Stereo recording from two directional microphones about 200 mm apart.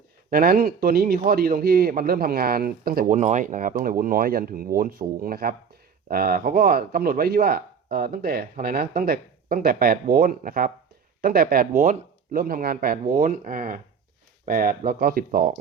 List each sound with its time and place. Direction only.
0.3 s a man's voice: 50° right (ahead or behind)